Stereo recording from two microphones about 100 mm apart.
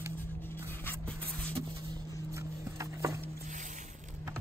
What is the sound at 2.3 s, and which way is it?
Clip-clop, 30° right (ahead or behind).